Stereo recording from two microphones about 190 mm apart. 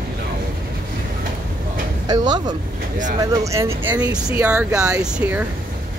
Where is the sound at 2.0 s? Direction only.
20° right (ahead or behind); by 5.4 s 5° right (ahead or behind).